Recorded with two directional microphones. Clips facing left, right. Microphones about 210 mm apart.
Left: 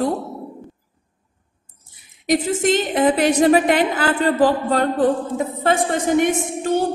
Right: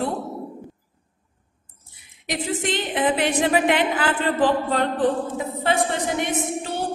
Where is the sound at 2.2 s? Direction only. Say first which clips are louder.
Left 8 dB; 45° left (ahead or behind).